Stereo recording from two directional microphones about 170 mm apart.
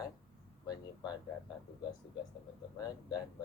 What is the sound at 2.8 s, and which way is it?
Speech, 25° left (ahead or behind).